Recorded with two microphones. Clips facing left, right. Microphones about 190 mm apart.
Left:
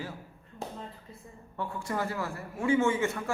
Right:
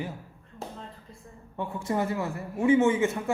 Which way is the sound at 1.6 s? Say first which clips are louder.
Right 4 dB; 20° right (ahead or behind).